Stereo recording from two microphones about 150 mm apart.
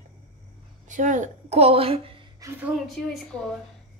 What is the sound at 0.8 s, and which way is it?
A woman's voice, 55° right (ahead or behind).